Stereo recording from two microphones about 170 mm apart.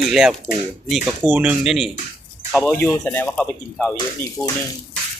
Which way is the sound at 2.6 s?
15° left (ahead or behind).